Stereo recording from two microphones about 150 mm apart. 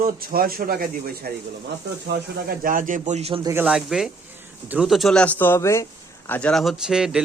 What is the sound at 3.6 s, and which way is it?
A man's voice, 5° right (ahead or behind).